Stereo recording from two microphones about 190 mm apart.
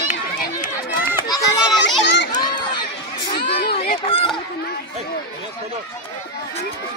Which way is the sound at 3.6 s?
55° left (ahead or behind).